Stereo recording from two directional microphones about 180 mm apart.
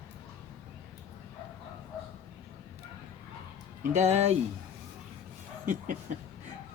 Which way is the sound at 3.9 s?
40° right (ahead or behind).